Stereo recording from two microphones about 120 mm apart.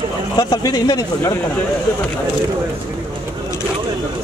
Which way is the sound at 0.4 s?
35° left (ahead or behind).